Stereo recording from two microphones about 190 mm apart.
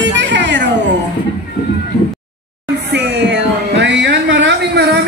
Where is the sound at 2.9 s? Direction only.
70° right (ahead or behind).